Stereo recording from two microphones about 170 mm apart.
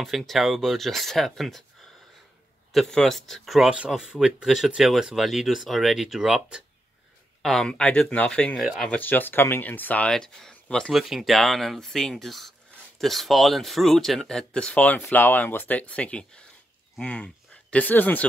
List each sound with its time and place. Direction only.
0.0 s speech: centre (ahead or behind)
2.7 s speech: centre (ahead or behind)